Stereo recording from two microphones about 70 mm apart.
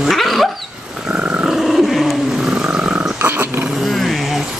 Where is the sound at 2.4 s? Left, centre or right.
Centre.